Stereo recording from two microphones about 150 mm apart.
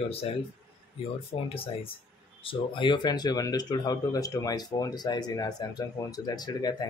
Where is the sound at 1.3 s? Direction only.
40° left (ahead or behind).